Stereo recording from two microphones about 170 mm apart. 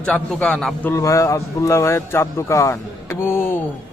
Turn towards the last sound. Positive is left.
turn(degrees=15)  # may be behind; listen again after turning